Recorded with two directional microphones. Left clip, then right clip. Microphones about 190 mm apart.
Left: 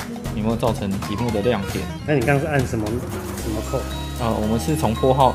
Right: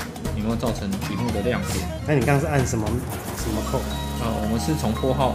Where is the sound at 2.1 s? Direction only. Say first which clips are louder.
Left 2 dB; 5° right (ahead or behind).